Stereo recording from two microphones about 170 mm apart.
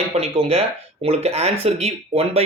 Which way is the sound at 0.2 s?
35° right (ahead or behind).